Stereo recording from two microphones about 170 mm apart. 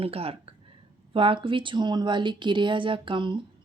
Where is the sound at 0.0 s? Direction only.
35° right (ahead or behind).